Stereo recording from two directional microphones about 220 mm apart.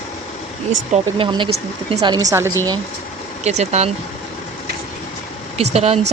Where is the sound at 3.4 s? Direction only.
30° right (ahead or behind).